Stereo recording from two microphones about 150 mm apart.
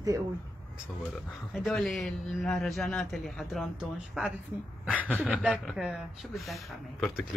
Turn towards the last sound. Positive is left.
turn(degrees=0)  # may be behind; listen again after turning